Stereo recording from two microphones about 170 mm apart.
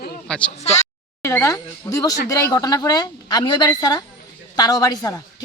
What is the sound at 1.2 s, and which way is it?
A woman's voice, 15° left (ahead or behind).